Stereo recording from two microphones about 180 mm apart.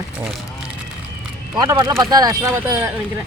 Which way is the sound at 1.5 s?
20° right (ahead or behind).